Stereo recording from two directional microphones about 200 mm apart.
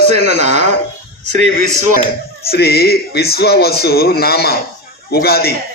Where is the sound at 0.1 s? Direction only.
35° right (ahead or behind).